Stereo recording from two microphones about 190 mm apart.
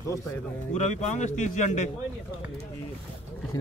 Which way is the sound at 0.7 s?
40° left (ahead or behind).